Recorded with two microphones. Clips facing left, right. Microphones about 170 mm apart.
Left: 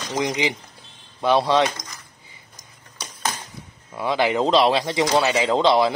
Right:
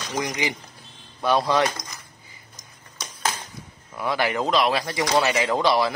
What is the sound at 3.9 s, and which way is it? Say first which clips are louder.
Speech: left 3 dB; 20° left (ahead or behind).